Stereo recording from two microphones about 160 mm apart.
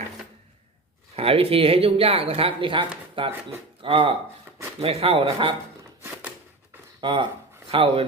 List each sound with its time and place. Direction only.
1.1 s speech: 35° right (ahead or behind)
6.0 s a sound: 10° right (ahead or behind)
7.0 s speech: 30° right (ahead or behind)